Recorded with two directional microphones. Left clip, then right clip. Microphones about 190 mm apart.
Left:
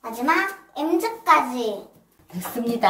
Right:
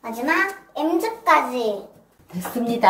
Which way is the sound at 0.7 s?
30° left (ahead or behind).